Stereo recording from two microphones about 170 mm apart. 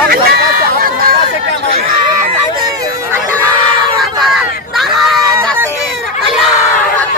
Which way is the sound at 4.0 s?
Centre (ahead or behind).